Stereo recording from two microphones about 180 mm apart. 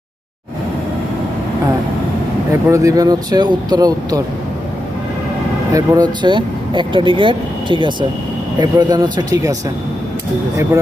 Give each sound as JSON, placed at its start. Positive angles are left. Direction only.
{"t": 2.5, "sound": "speech", "side_deg": -15}
{"t": 5.7, "sound": "speech", "side_deg": -20}